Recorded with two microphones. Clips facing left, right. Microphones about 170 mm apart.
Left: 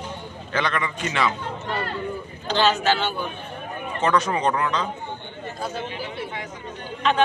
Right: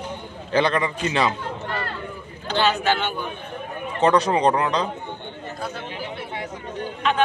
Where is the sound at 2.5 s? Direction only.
10° right (ahead or behind).